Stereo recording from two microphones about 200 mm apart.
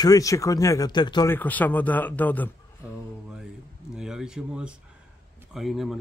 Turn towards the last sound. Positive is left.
turn(degrees=0)  # may be behind; listen again after turning